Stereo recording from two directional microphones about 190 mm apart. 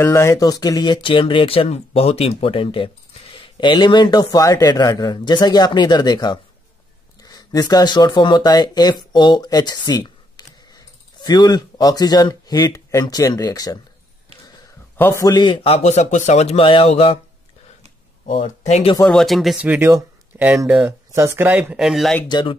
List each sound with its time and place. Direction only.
0.0 s speech: 15° left (ahead or behind)
15.0 s a man's voice: 15° left (ahead or behind); by 17.2 s 30° left (ahead or behind)
18.3 s speech: 30° left (ahead or behind)
19.0 s speech: centre (ahead or behind)
22.3 s speech: 25° left (ahead or behind)